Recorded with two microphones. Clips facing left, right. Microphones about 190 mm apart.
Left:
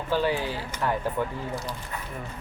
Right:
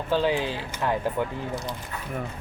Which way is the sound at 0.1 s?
20° right (ahead or behind).